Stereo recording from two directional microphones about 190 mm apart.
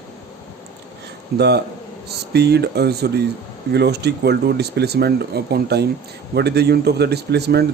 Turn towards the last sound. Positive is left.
turn(degrees=-60)  # may be behind; listen again after turning